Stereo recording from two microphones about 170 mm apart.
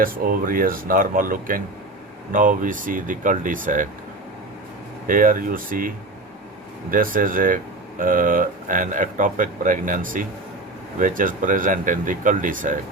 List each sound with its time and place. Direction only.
0.0 s speech: 55° right (ahead or behind)
5.0 s speech: 55° right (ahead or behind)
6.9 s speech: 55° right (ahead or behind)